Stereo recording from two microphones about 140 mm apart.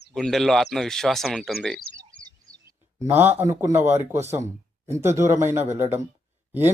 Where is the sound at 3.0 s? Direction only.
15° right (ahead or behind).